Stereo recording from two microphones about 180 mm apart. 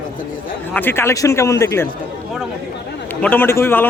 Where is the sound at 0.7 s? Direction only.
10° left (ahead or behind).